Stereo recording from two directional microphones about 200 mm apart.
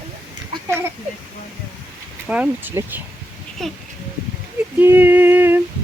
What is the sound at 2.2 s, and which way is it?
Speech, 5° right (ahead or behind).